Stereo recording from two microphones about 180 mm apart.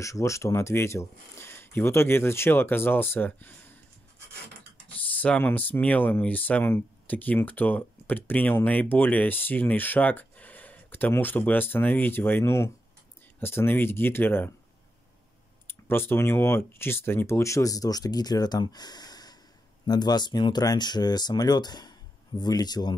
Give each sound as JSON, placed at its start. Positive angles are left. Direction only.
{"t": 0.0, "sound": "speech", "side_deg": 15}
{"t": 5.2, "sound": "speech", "side_deg": 10}
{"t": 15.6, "sound": "speech", "side_deg": 10}